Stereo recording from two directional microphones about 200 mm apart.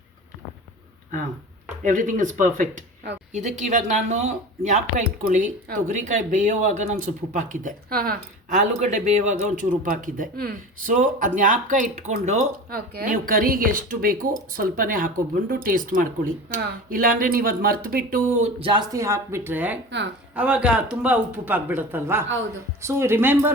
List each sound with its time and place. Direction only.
1.8 s speech: 40° right (ahead or behind)
18.4 s a man's voice: 25° right (ahead or behind); by 23.5 s 10° right (ahead or behind)